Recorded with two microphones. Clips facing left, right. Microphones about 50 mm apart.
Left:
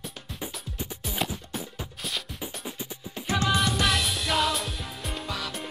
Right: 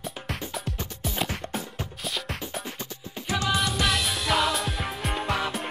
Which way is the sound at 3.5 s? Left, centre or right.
Centre.